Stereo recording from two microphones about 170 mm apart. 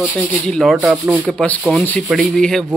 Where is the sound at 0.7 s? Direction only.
5° right (ahead or behind).